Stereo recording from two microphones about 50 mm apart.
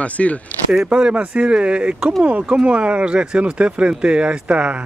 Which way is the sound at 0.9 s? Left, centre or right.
Centre.